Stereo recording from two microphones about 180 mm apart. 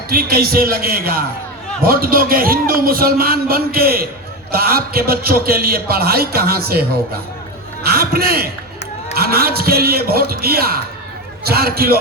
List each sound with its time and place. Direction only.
0.1 s a man's voice: 55° right (ahead or behind)
7.9 s a man's voice: 55° right (ahead or behind)